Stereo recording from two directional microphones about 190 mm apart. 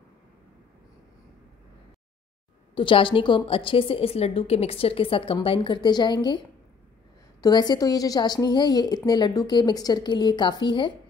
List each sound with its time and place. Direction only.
2.7 s a woman's voice: 25° left (ahead or behind)
7.4 s a woman's voice: 20° left (ahead or behind)